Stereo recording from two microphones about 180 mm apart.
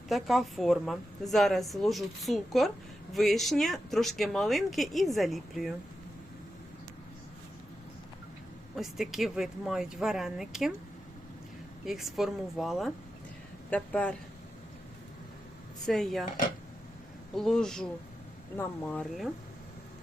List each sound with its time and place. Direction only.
0.1 s a woman's voice: centre (ahead or behind)
8.7 s a woman's voice: centre (ahead or behind)
11.9 s a woman's voice: centre (ahead or behind)
15.9 s a woman's voice: centre (ahead or behind)
17.3 s a woman's voice: 5° left (ahead or behind)